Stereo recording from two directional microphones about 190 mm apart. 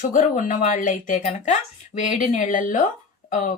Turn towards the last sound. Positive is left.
turn(degrees=40)  # may be behind; listen again after turning